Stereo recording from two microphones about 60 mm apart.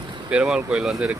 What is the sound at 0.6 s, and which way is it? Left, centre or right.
Speech, centre.